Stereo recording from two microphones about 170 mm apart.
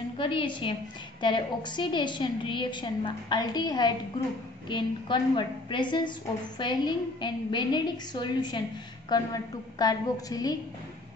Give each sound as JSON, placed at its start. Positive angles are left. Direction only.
{"t": 0.2, "sound": "a woman's voice", "side_deg": 30}